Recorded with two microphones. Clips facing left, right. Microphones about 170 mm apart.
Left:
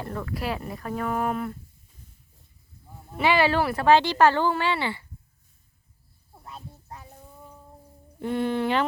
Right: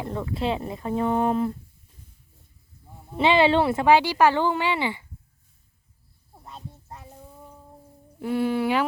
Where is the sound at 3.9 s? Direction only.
10° right (ahead or behind).